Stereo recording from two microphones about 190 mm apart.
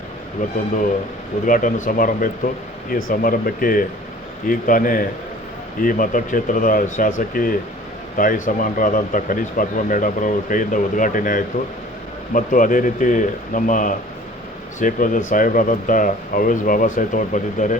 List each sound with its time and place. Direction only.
1.5 s speech: 45° left (ahead or behind)